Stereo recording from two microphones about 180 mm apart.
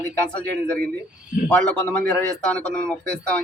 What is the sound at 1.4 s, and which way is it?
Speech, 5° left (ahead or behind).